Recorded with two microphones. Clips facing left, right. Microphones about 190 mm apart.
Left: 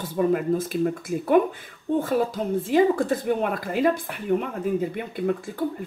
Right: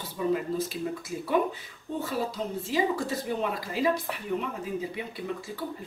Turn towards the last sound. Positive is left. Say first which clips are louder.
# left 9 dB
turn(degrees=55)  # may be behind; listen again after turning